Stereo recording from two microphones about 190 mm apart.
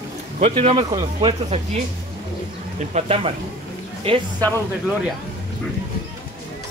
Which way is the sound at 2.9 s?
30° right (ahead or behind).